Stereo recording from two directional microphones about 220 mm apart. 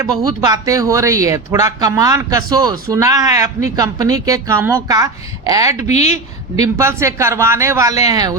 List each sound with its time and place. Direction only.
0.0 s speech: 15° right (ahead or behind)
5.9 s a woman's voice: 30° left (ahead or behind)
6.6 s speech: 15° right (ahead or behind)